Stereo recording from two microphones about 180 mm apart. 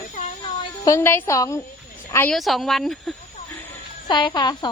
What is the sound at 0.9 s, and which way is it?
Speech, 15° left (ahead or behind).